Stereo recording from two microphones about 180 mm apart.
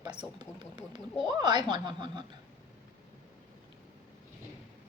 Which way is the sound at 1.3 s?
25° right (ahead or behind).